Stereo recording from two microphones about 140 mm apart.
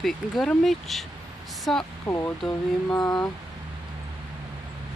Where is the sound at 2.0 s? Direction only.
20° left (ahead or behind).